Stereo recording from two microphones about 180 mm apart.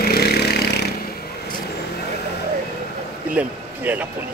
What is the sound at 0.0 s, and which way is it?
Vehicle, 60° left (ahead or behind).